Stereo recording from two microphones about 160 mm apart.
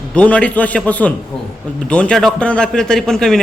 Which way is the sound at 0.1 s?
5° left (ahead or behind).